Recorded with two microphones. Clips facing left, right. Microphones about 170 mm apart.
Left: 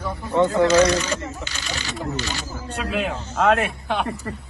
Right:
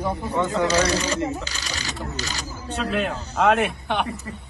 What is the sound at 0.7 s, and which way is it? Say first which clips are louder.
Speech: left 4 dB; 35° right (ahead or behind).